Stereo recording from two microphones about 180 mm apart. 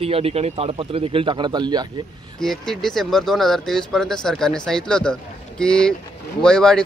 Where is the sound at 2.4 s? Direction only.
Centre (ahead or behind).